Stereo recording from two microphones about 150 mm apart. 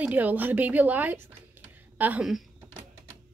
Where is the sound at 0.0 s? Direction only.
10° right (ahead or behind).